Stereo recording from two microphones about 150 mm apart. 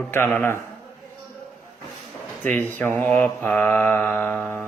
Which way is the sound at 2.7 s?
10° left (ahead or behind).